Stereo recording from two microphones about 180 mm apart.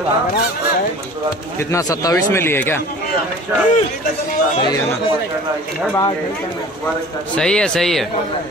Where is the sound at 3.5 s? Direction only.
10° right (ahead or behind).